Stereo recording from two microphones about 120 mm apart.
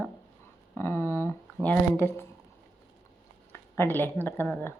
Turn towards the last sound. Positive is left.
turn(degrees=20)  # may be behind; listen again after turning